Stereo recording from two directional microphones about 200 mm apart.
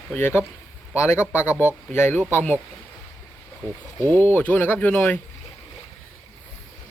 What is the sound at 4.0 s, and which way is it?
Speech, 10° left (ahead or behind).